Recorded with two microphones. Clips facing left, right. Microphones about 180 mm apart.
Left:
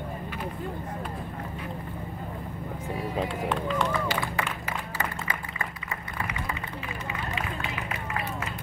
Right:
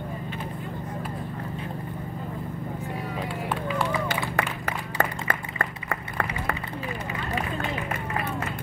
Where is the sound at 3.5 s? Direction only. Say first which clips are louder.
Right 2 dB; 5° right (ahead or behind).